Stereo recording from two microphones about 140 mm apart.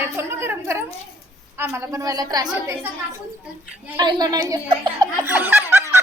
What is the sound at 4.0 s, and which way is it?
Speech, 30° right (ahead or behind).